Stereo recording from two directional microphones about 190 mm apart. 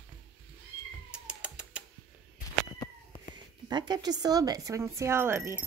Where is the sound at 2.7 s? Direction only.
20° left (ahead or behind).